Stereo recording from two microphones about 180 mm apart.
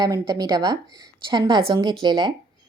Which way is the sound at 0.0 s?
20° right (ahead or behind).